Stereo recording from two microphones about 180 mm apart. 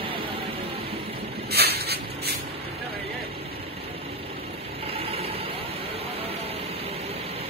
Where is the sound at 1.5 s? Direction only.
60° right (ahead or behind).